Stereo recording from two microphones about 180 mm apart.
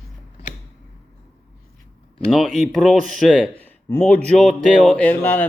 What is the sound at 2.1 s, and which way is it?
Speech, centre (ahead or behind).